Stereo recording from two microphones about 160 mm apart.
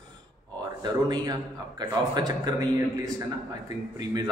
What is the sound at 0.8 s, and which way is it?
A man's voice, 25° right (ahead or behind).